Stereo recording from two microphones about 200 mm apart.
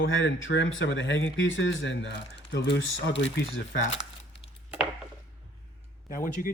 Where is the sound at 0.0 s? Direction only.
75° left (ahead or behind).